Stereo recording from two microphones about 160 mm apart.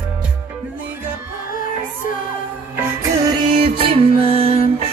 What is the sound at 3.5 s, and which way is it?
Music, 35° right (ahead or behind).